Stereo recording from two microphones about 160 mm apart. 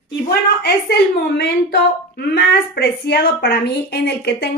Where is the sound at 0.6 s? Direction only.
90° left.